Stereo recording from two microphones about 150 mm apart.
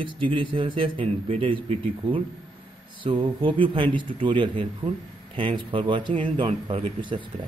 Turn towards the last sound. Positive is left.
turn(degrees=-35)  # may be behind; listen again after turning